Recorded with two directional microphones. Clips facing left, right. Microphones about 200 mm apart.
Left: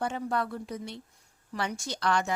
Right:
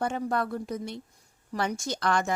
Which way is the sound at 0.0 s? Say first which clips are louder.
Right 2 dB; 45° right (ahead or behind).